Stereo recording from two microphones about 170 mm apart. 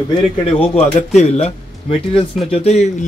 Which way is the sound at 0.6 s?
40° left (ahead or behind).